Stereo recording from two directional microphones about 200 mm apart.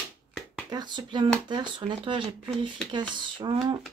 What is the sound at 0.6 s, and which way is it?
Speech, 20° right (ahead or behind).